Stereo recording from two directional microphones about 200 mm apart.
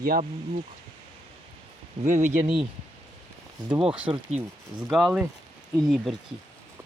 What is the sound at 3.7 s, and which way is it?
Speech, 25° right (ahead or behind).